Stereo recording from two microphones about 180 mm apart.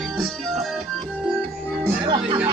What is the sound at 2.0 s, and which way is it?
Music, 25° right (ahead or behind).